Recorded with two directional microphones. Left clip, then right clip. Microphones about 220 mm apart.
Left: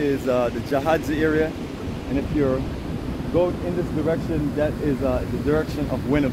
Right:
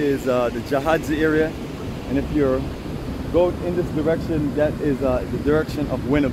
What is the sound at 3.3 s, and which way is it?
Speech, 20° right (ahead or behind).